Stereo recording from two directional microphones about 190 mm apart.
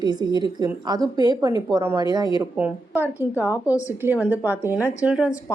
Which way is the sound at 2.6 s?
10° right (ahead or behind).